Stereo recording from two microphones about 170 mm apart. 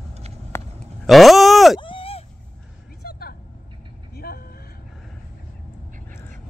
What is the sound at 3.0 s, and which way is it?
Vehicle, 65° left (ahead or behind).